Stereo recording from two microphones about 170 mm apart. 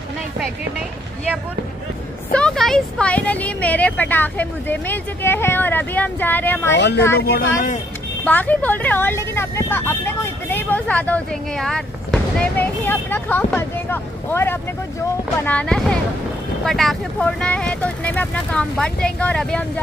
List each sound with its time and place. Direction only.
2.3 s speech: 5° left (ahead or behind)
6.7 s speech: 90° left
7.2 s speech: 65° left (ahead or behind)
8.3 s speech: 10° left (ahead or behind)